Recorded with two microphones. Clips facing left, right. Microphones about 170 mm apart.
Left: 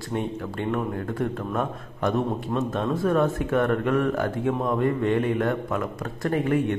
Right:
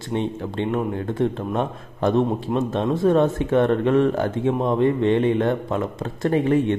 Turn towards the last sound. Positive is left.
turn(degrees=-25)  # may be behind; listen again after turning